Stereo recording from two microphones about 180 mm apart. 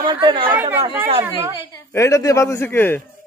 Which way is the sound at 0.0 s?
30° right (ahead or behind).